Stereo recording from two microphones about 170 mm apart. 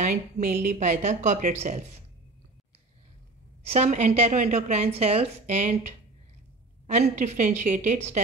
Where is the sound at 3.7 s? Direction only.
40° right (ahead or behind).